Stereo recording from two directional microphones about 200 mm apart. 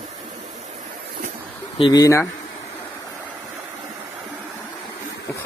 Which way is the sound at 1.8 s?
20° left (ahead or behind).